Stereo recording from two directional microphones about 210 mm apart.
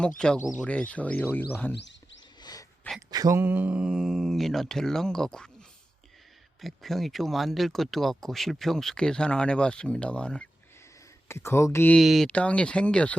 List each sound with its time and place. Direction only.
0.2 s speech: 5° left (ahead or behind)
1.7 s speech: 55° left (ahead or behind)
2.4 s sneeze: 20° left (ahead or behind)
3.1 s speech: 15° right (ahead or behind); by 13.1 s 5° left (ahead or behind)